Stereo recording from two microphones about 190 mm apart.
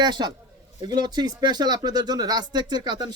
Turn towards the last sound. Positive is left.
turn(degrees=-25)  # may be behind; listen again after turning